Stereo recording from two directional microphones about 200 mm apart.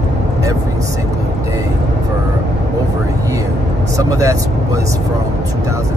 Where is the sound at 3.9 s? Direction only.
15° right (ahead or behind).